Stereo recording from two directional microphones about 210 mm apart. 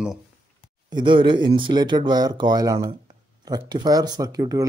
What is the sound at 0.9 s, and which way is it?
Speech, 25° right (ahead or behind).